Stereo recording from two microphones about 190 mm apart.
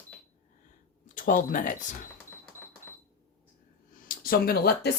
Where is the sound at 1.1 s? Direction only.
45° left (ahead or behind).